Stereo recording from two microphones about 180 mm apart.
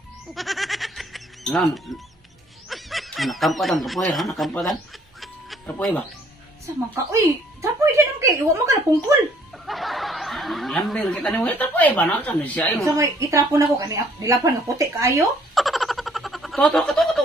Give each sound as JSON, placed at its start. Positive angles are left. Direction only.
{"t": 0.3, "sound": "music", "side_deg": 0}
{"t": 2.7, "sound": "speech", "side_deg": 0}
{"t": 5.2, "sound": "music", "side_deg": 0}
{"t": 6.6, "sound": "a woman's voice", "side_deg": -15}
{"t": 9.7, "sound": "speech", "side_deg": 0}
{"t": 12.8, "sound": "a woman's voice", "side_deg": -15}
{"t": 15.5, "sound": "a sound", "side_deg": 0}